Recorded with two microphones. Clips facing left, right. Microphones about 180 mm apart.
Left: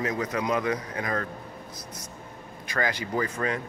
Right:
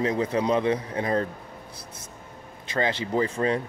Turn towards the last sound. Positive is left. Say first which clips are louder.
# right 4 dB
turn(degrees=-30)  # may be behind; listen again after turning